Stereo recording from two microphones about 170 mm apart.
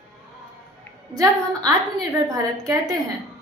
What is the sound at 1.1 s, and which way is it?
A woman's voice, 20° right (ahead or behind).